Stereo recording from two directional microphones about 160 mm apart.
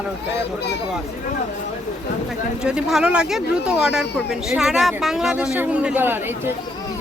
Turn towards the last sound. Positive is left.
turn(degrees=-15)  # may be behind; listen again after turning